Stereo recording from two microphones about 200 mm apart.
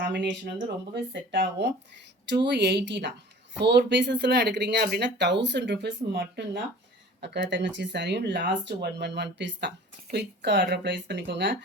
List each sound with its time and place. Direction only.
0.0 s speech: 60° right (ahead or behind)